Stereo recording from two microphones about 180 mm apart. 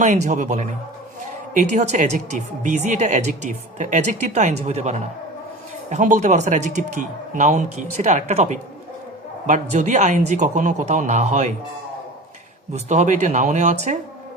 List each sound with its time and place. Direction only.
0.0 s speech: 40° right (ahead or behind)
12.7 s speech: 40° right (ahead or behind)